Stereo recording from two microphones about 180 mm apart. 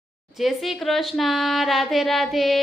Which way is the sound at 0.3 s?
Centre (ahead or behind).